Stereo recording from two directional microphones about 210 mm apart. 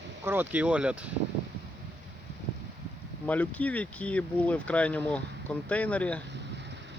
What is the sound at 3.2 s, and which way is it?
Speech, 5° left (ahead or behind).